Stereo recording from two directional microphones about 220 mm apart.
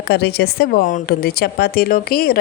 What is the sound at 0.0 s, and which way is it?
Speech, 45° left (ahead or behind).